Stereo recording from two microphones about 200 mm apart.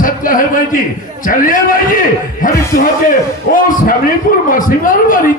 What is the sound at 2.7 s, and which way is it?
A man's voice, 45° left (ahead or behind).